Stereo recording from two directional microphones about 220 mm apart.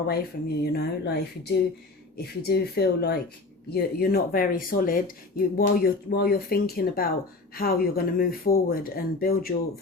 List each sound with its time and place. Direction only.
0.1 s speech: 45° left (ahead or behind)